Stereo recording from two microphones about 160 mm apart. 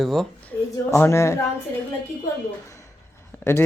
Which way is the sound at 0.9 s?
15° left (ahead or behind).